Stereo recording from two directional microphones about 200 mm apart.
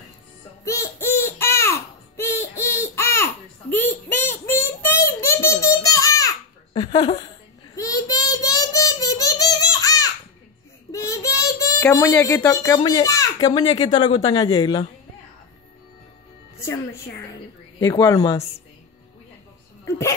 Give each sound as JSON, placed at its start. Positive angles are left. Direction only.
{"t": 0.7, "sound": "a sound", "side_deg": 15}
{"t": 13.7, "sound": "speech", "side_deg": 20}
{"t": 16.5, "sound": "a woman's voice", "side_deg": 15}
{"t": 19.8, "sound": "speech", "side_deg": 15}